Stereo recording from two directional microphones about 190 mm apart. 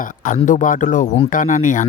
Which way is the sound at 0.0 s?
45° left (ahead or behind).